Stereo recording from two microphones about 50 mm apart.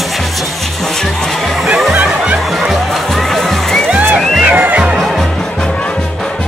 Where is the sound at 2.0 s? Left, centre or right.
Right.